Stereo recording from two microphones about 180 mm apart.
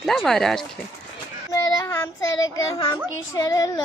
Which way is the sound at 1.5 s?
15° left (ahead or behind).